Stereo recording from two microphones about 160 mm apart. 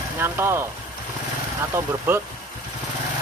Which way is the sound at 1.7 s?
15° right (ahead or behind).